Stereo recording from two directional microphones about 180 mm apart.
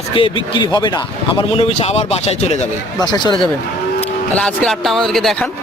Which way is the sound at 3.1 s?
25° left (ahead or behind).